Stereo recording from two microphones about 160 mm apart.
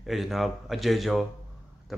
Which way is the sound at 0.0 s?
Centre (ahead or behind).